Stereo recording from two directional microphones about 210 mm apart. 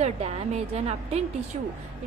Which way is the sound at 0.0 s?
30° right (ahead or behind).